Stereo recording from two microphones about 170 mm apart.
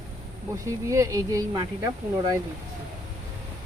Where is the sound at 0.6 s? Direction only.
20° right (ahead or behind).